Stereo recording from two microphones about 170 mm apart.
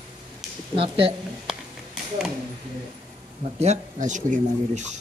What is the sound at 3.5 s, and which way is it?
Speech, 40° right (ahead or behind).